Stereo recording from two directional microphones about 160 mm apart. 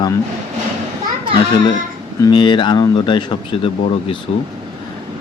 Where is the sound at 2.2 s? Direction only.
30° left (ahead or behind).